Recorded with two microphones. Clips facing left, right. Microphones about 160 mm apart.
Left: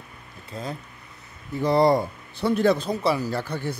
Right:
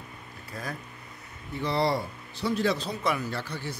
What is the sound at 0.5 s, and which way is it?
Speech, 25° left (ahead or behind).